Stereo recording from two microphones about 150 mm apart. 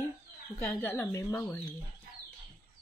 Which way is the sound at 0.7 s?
15° left (ahead or behind).